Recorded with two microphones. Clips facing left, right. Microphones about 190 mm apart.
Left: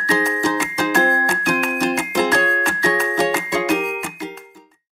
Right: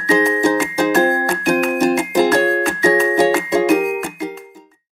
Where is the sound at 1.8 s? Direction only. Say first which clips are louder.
Right 4 dB; 45° right (ahead or behind).